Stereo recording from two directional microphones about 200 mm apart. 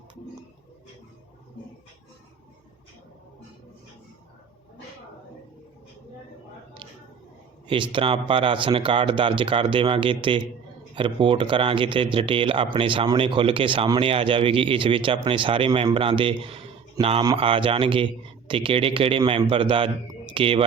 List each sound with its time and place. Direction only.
7.7 s speech: 25° right (ahead or behind)